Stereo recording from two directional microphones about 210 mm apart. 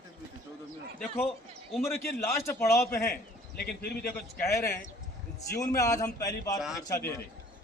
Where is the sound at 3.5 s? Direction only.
50° left (ahead or behind).